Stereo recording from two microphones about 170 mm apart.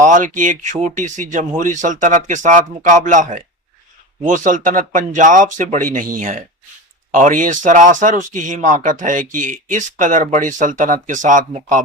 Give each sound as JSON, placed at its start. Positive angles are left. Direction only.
{"t": 0.0, "sound": "speech", "side_deg": -50}